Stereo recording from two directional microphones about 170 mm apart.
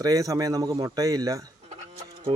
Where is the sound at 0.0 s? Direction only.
20° right (ahead or behind).